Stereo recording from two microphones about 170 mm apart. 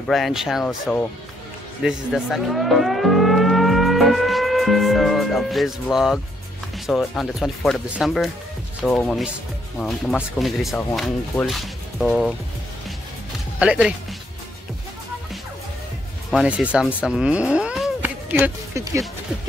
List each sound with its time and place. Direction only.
0.1 s speech: centre (ahead or behind)
13.6 s speech: 5° right (ahead or behind)
16.3 s speech: 5° right (ahead or behind)
18.0 s speech: 15° right (ahead or behind)